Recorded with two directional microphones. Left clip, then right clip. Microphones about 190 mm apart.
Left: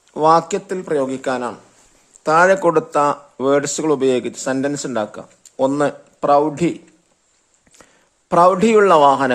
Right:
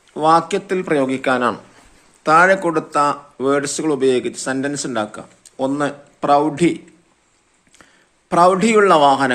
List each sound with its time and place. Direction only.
0.1 s speech: 45° left (ahead or behind)
0.8 s speech: 25° left (ahead or behind)
2.2 s speech: 45° left (ahead or behind)
8.3 s speech: 45° left (ahead or behind)